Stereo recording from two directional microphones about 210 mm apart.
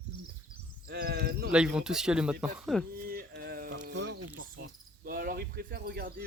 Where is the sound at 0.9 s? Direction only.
50° right (ahead or behind).